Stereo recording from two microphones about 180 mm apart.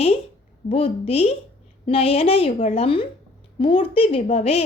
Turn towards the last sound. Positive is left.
turn(degrees=35)  # may be behind; listen again after turning